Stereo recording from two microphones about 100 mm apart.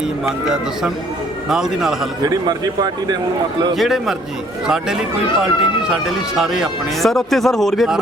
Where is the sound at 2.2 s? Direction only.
45° right (ahead or behind).